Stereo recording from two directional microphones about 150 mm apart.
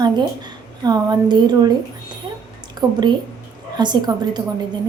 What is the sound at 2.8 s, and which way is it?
A woman's voice, 25° right (ahead or behind).